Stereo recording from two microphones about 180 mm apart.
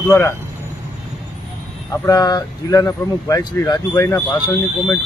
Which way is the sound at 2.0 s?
20° left (ahead or behind).